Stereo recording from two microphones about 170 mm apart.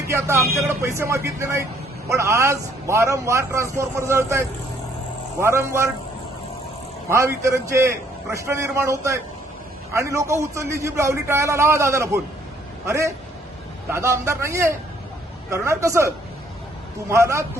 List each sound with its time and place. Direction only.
0.1 s a man's voice: 15° right (ahead or behind)
7.1 s a man's voice: 15° right (ahead or behind)